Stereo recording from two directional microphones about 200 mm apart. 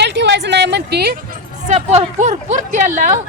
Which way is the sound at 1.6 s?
35° right (ahead or behind).